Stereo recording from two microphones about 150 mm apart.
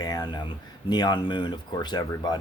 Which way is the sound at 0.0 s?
25° left (ahead or behind).